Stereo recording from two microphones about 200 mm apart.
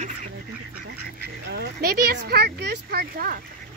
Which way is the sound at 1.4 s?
55° right (ahead or behind).